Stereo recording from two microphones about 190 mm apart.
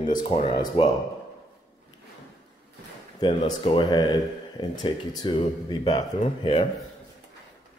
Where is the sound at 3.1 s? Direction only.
20° left (ahead or behind).